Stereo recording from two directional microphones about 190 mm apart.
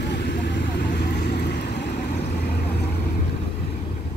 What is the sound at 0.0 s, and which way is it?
Vehicle, 65° left (ahead or behind).